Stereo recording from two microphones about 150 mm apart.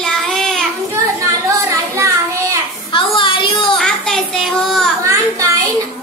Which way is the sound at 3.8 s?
5° left (ahead or behind).